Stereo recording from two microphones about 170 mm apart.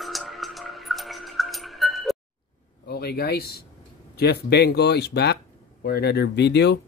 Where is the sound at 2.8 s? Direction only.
70° left (ahead or behind).